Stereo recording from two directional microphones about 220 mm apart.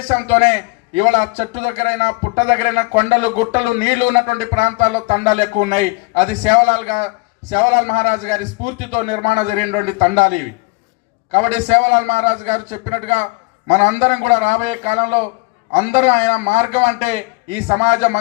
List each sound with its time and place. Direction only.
0.3 s a man's voice: 30° right (ahead or behind)